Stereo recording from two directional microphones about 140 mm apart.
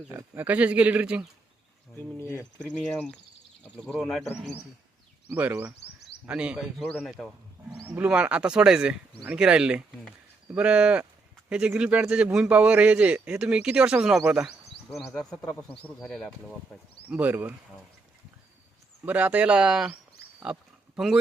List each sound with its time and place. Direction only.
0.1 s a man's voice: 15° right (ahead or behind)
2.1 s speech: 20° left (ahead or behind)
2.7 s speech: 5° left (ahead or behind)
5.3 s a man's voice: 15° right (ahead or behind)
17.1 s a man's voice: 10° right (ahead or behind)
19.0 s a man's voice: 10° right (ahead or behind)
20.4 s a sound: 5° right (ahead or behind)